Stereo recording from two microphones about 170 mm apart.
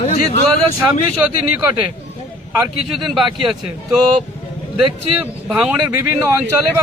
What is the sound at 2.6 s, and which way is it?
Speech, centre (ahead or behind).